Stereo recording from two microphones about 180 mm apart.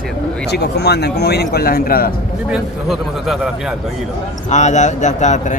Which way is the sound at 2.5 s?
Centre (ahead or behind).